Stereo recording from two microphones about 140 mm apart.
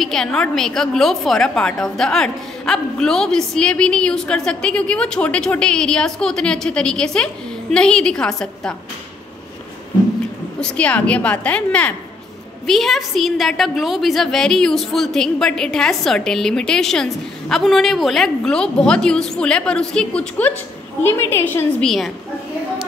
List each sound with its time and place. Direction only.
0.0 s a woman's voice: 5° left (ahead or behind)
10.6 s a woman's voice: 10° left (ahead or behind)
21.8 s a woman's voice: centre (ahead or behind)